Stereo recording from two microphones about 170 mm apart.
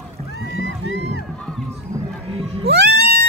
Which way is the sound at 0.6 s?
90° right.